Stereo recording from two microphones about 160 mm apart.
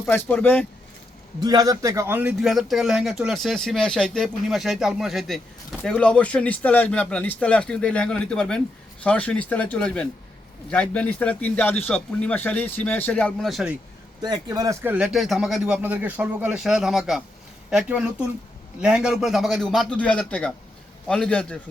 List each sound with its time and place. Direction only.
0.0 s a man's voice: 15° left (ahead or behind)
1.4 s a man's voice: 25° right (ahead or behind)
2.4 s a man's voice: centre (ahead or behind)
14.2 s a man's voice: 25° right (ahead or behind); by 21.6 s 5° left (ahead or behind)